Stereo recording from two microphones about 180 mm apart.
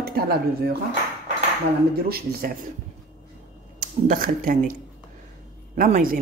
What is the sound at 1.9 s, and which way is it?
Speech, 55° right (ahead or behind).